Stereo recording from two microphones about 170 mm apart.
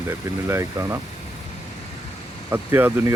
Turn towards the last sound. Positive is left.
turn(degrees=-15)  # may be behind; listen again after turning